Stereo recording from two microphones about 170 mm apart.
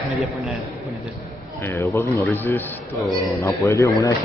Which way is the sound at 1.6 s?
15° left (ahead or behind).